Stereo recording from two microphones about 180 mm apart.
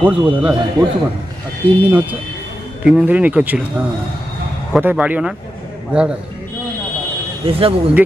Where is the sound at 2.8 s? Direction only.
5° right (ahead or behind).